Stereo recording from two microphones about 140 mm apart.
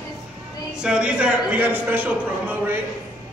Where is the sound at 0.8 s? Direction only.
5° right (ahead or behind).